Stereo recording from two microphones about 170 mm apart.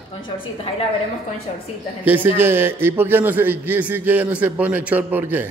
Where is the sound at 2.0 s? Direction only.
10° right (ahead or behind).